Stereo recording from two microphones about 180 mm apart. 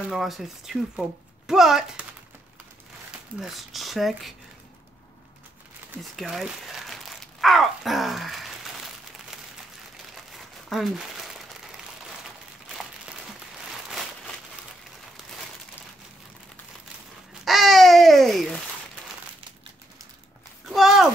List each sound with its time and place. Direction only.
0.1 s speech: centre (ahead or behind)
3.3 s speech: centre (ahead or behind)
6.1 s crumpling: centre (ahead or behind)
13.8 s a sound: centre (ahead or behind)
17.5 s babbling: centre (ahead or behind)
20.6 s a sound: centre (ahead or behind)